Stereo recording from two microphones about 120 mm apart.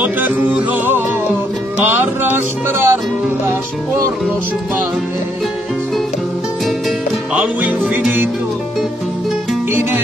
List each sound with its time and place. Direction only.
0.0 s music: 15° right (ahead or behind)
2.3 s speech: 20° right (ahead or behind)
7.3 s music: 10° right (ahead or behind)